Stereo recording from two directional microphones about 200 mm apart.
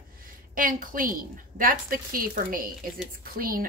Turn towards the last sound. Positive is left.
turn(degrees=-45)  # may be behind; listen again after turning